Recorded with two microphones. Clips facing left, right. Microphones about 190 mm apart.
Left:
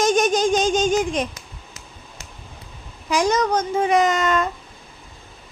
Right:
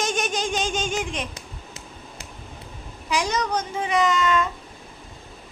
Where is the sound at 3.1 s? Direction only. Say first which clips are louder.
Left 5 dB; 45° left (ahead or behind).